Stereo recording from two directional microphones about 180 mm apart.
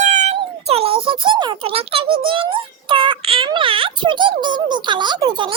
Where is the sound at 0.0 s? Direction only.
40° right (ahead or behind).